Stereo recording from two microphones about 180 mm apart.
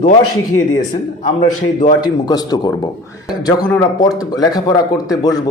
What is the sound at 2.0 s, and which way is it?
Speech, 20° left (ahead or behind).